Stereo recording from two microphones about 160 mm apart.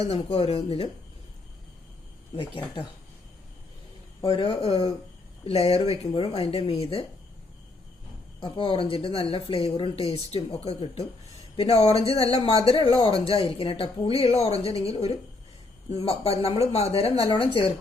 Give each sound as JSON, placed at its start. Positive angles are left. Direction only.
{"t": 0.1, "sound": "a woman's voice", "side_deg": 40}
{"t": 4.2, "sound": "a woman's voice", "side_deg": 35}
{"t": 8.4, "sound": "a woman's voice", "side_deg": 30}